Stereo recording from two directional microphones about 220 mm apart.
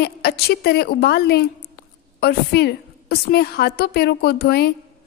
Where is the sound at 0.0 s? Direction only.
45° left (ahead or behind).